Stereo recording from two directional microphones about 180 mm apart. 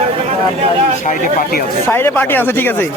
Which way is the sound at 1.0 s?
50° left (ahead or behind).